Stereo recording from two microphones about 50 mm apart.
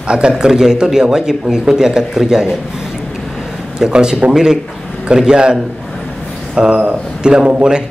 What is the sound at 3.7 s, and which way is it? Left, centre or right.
A man's voice, centre.